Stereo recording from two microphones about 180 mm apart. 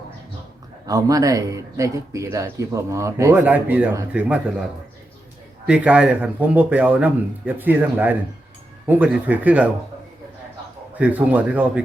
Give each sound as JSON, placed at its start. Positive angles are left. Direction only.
{"t": 0.9, "sound": "speech", "side_deg": -20}
{"t": 5.6, "sound": "speech", "side_deg": -5}
{"t": 10.9, "sound": "speech", "side_deg": -10}